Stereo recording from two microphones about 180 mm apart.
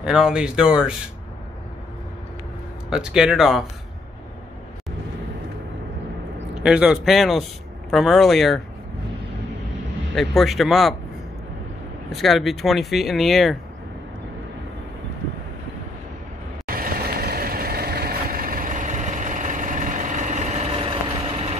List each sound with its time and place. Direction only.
0.0 s speech: 5° right (ahead or behind)
2.9 s speech: 5° right (ahead or behind)
6.5 s speech: 5° right (ahead or behind)
10.1 s speech: centre (ahead or behind)
12.1 s speech: centre (ahead or behind)
16.6 s vehicle: 55° right (ahead or behind); by 21.5 s 35° right (ahead or behind)